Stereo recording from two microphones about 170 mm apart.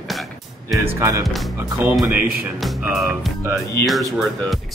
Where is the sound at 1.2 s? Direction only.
Centre (ahead or behind).